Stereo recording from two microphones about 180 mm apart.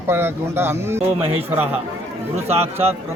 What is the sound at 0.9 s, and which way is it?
Speech, 35° right (ahead or behind).